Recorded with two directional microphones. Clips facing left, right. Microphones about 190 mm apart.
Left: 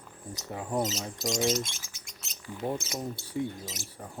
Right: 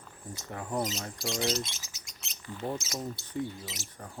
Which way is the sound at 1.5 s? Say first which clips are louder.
Left 3 dB; 10° left (ahead or behind).